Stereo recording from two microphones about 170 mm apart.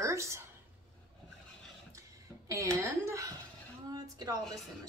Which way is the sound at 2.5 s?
20° right (ahead or behind).